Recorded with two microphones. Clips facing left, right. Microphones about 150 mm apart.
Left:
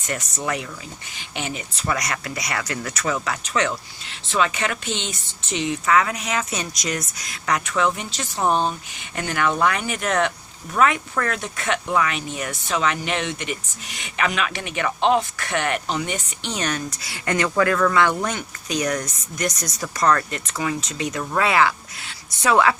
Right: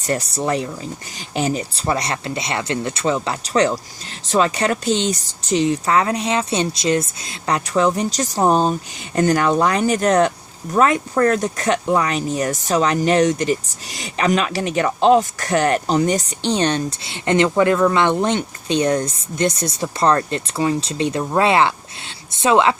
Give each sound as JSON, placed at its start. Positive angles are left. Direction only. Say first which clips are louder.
{"t": 0.0, "sound": "speech", "louder": "right 6 dB", "side_deg": -35}